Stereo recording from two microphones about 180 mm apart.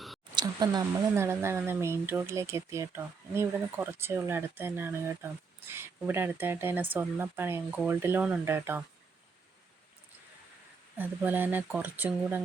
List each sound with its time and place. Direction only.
0.3 s speech: 20° right (ahead or behind)
10.9 s speech: 10° right (ahead or behind)